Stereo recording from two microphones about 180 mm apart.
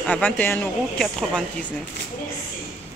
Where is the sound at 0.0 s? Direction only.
10° left (ahead or behind).